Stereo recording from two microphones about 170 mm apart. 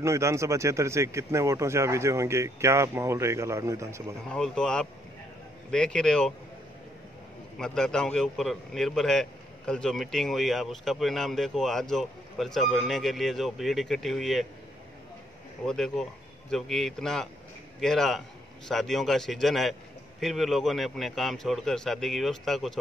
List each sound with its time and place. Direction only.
0.0 s speech: 15° right (ahead or behind)
4.3 s a man's voice: 5° left (ahead or behind)
7.5 s a man's voice: 5° left (ahead or behind)
15.6 s a man's voice: 5° left (ahead or behind)